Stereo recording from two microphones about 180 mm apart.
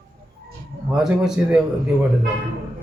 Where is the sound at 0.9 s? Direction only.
5° right (ahead or behind).